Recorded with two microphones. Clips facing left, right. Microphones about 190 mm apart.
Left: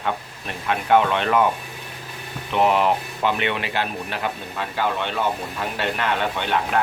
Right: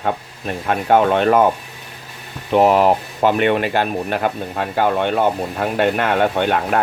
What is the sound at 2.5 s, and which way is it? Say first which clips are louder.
Speech: right 6 dB; 45° right (ahead or behind).